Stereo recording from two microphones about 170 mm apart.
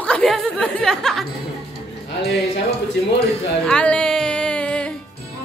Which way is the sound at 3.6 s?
5° left (ahead or behind).